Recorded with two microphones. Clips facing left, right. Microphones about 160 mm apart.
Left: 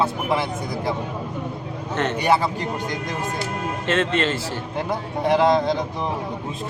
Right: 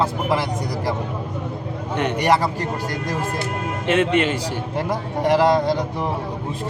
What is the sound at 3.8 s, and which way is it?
A man's voice, 15° right (ahead or behind).